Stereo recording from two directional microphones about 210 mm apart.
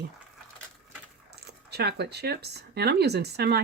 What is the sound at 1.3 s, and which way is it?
Speech, 50° right (ahead or behind).